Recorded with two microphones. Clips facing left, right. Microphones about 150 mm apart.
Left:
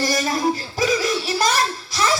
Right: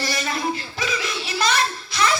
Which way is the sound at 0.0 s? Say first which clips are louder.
Left 5 dB; 45° left (ahead or behind).